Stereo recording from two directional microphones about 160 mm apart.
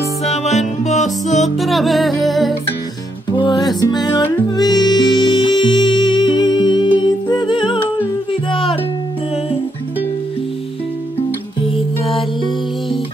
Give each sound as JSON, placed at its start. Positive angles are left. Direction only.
{"t": 0.2, "sound": "music", "side_deg": 45}
{"t": 1.6, "sound": "music", "side_deg": 0}
{"t": 3.3, "sound": "music", "side_deg": 25}
{"t": 11.6, "sound": "music", "side_deg": 35}